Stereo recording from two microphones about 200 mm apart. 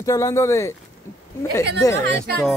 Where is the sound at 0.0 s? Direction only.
15° left (ahead or behind).